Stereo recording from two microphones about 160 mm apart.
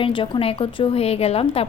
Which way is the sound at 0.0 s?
35° left (ahead or behind).